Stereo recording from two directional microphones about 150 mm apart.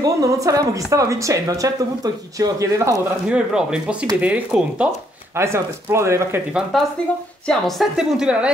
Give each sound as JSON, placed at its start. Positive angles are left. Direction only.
{"t": 0.0, "sound": "speech", "side_deg": -20}
{"t": 3.3, "sound": "speech", "side_deg": -5}
{"t": 5.3, "sound": "speech", "side_deg": -15}
{"t": 6.7, "sound": "a woman's voice", "side_deg": 0}